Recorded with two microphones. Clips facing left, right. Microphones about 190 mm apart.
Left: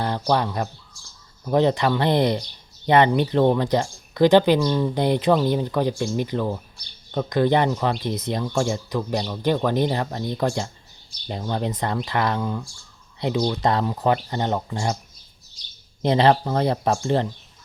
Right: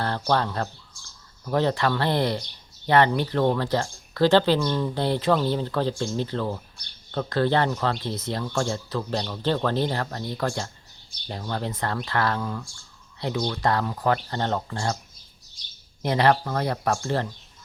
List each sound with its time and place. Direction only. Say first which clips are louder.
0.0 s speech: left 2 dB; 15° left (ahead or behind)
16.0 s speech: left 3 dB; 25° left (ahead or behind)